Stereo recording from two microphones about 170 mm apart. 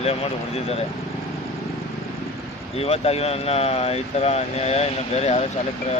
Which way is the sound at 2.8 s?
35° left (ahead or behind).